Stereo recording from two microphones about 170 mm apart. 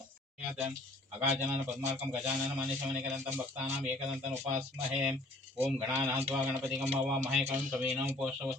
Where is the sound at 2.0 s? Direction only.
10° right (ahead or behind).